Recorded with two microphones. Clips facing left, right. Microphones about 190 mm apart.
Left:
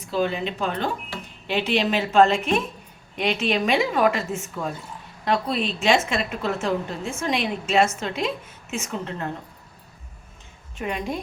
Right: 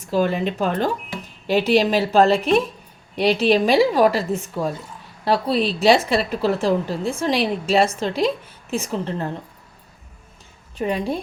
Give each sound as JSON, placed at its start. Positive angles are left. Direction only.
{"t": 0.1, "sound": "a woman's voice", "side_deg": -45}
{"t": 10.8, "sound": "a woman's voice", "side_deg": -35}